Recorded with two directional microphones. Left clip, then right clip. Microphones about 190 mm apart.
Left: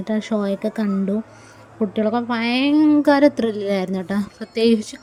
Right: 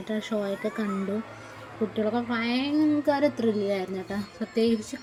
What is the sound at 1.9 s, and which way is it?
A woman's voice, 40° left (ahead or behind).